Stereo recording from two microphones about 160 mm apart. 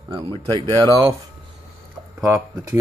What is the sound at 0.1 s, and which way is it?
Speech, 30° right (ahead or behind).